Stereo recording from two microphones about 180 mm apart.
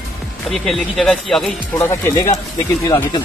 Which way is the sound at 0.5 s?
Centre (ahead or behind).